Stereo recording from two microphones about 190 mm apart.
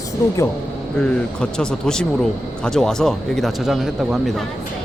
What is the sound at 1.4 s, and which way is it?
Speech, 5° left (ahead or behind).